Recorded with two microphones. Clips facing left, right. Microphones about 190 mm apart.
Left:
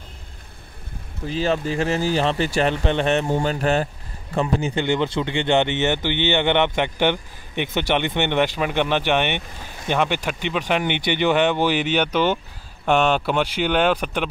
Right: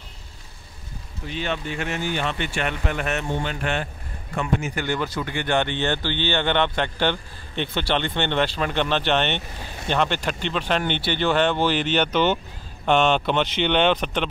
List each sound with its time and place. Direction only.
1.3 s speech: 35° left (ahead or behind); by 14.2 s 10° left (ahead or behind)